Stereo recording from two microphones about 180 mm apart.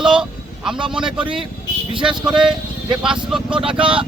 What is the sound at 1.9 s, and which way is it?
Speech, 30° right (ahead or behind).